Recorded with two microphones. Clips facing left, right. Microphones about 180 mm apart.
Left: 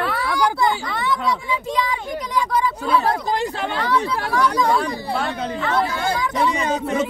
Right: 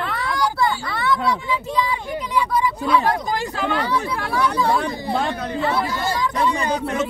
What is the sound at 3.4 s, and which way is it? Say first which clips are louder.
Speech: right 1 dB; 30° left (ahead or behind).